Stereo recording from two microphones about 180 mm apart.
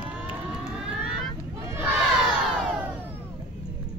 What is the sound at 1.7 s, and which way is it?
Crowd, 15° right (ahead or behind).